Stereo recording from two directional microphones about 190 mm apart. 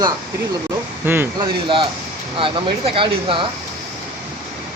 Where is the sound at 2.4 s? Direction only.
30° right (ahead or behind).